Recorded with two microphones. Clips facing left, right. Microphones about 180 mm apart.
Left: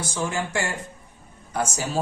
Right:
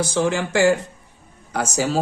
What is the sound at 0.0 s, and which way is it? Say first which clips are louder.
A man's voice: right 7 dB; 80° right.